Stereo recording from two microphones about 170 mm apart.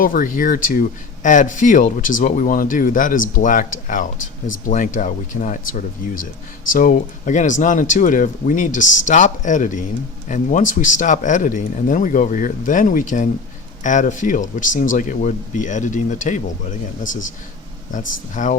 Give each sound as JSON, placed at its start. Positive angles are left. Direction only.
{"t": 0.0, "sound": "speech", "side_deg": 55}
{"t": 17.9, "sound": "speech", "side_deg": 50}